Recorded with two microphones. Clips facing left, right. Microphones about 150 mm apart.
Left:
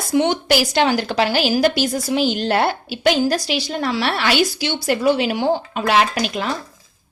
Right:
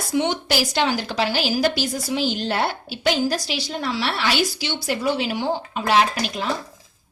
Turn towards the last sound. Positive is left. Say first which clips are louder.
# left 2 dB
turn(degrees=70)  # may be behind; listen again after turning